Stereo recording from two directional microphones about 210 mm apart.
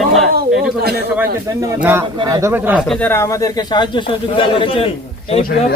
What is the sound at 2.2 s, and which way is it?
Speech, 15° right (ahead or behind).